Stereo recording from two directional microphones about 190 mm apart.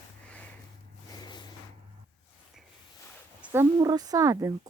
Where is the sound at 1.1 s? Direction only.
20° left (ahead or behind).